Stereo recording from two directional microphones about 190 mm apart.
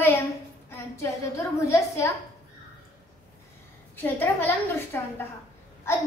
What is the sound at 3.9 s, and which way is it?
A child's voice, 10° left (ahead or behind).